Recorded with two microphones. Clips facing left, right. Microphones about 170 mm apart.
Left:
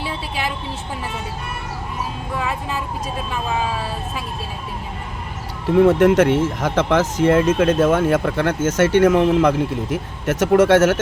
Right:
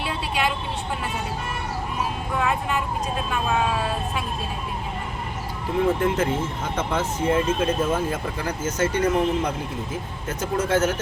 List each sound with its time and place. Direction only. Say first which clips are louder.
5.8 s speech: left 9 dB; 80° left